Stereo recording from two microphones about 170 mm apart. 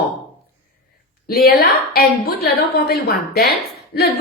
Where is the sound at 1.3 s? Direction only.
65° left (ahead or behind).